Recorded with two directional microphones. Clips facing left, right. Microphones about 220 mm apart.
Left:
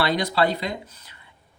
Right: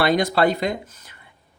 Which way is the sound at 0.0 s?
50° right (ahead or behind).